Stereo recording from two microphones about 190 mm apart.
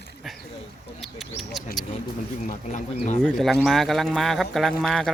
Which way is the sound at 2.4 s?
40° left (ahead or behind).